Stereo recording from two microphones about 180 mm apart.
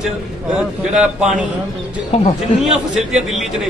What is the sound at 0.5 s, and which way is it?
Speech, 5° right (ahead or behind).